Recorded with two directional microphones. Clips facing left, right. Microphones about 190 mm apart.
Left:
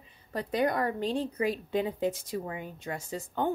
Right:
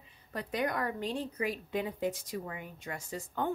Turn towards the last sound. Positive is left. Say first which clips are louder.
# left 4 dB
turn(degrees=25)  # may be behind; listen again after turning